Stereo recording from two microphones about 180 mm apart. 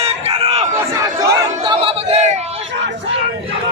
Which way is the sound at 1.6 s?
30° right (ahead or behind).